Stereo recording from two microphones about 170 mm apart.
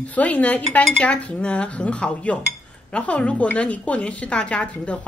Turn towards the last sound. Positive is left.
turn(degrees=5)  # may be behind; listen again after turning